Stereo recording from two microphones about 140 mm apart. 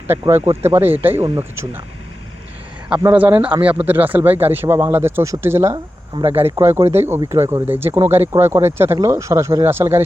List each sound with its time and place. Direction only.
0.1 s speech: 15° right (ahead or behind)
1.2 s speech: 40° right (ahead or behind)
3.1 s speech: 10° right (ahead or behind)
5.7 s speech: 40° right (ahead or behind)
6.4 s speech: 15° right (ahead or behind)